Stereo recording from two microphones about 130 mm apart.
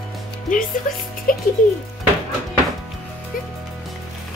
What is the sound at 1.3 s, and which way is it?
Speech, 90° left.